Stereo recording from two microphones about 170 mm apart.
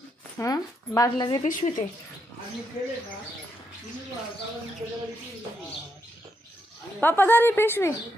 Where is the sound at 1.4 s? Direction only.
50° left (ahead or behind).